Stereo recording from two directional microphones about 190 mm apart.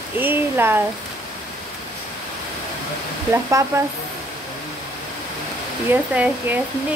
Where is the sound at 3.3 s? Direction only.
15° right (ahead or behind).